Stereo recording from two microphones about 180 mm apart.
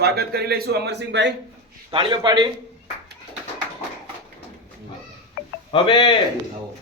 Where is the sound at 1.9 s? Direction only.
25° right (ahead or behind).